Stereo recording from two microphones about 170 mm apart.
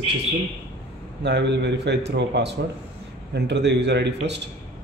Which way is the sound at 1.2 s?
85° right.